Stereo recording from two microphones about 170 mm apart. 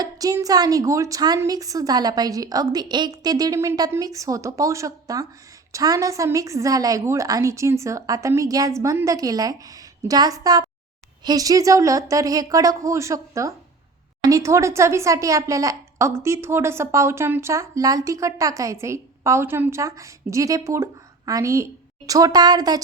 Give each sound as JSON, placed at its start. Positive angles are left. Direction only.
{"t": 0.0, "sound": "a woman's voice", "side_deg": -20}